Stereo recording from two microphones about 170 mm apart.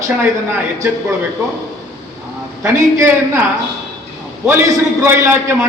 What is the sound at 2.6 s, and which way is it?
Speech, 15° right (ahead or behind).